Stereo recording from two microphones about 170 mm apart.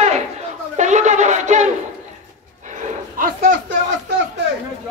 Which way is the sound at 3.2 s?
60° right (ahead or behind).